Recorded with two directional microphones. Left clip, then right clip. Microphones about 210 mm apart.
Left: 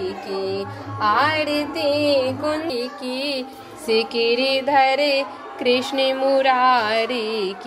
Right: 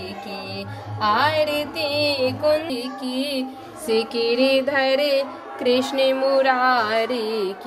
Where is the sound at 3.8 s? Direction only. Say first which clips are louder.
Left 2 dB; 10° left (ahead or behind).